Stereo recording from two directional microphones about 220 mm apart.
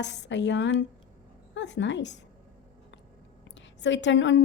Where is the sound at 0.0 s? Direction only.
55° left (ahead or behind).